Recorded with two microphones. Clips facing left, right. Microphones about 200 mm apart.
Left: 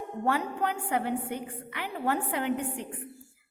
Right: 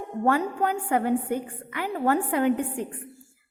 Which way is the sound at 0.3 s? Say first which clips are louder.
Right 5 dB; 45° right (ahead or behind).